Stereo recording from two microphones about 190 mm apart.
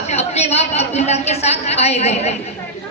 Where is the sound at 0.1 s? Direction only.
35° left (ahead or behind).